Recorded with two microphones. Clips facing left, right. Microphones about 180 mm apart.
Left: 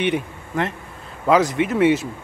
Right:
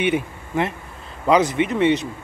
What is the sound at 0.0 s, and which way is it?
Speech, 5° right (ahead or behind).